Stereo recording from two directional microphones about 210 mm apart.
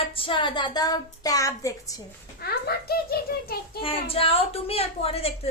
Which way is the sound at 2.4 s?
50° left (ahead or behind).